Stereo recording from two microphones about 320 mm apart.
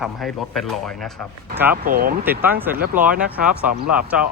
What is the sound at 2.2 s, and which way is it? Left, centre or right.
Speech, centre.